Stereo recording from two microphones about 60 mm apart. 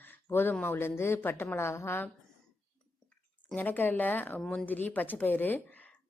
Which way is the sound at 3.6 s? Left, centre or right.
Left.